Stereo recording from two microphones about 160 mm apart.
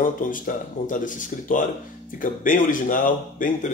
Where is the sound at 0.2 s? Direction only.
55° left (ahead or behind).